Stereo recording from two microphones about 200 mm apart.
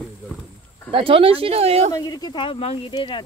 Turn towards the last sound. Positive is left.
turn(degrees=25)  # may be behind; listen again after turning